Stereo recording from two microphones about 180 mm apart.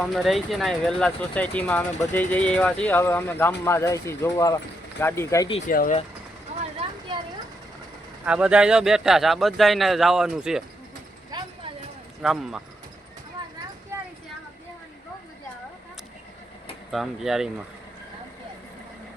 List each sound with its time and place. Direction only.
0.0 s a man's voice: centre (ahead or behind)
5.6 s speech: 50° left (ahead or behind)
7.1 s a sound: 25° right (ahead or behind)
8.2 s a man's voice: 5° right (ahead or behind)
11.3 s a sound: 25° right (ahead or behind)
12.2 s a man's voice: centre (ahead or behind)
16.9 s a man's voice: centre (ahead or behind)